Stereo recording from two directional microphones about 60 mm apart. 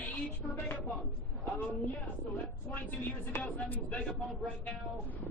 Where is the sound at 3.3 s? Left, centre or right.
Left.